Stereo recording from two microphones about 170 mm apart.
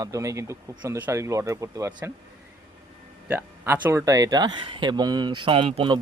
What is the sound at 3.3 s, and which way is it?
Speech, 10° right (ahead or behind).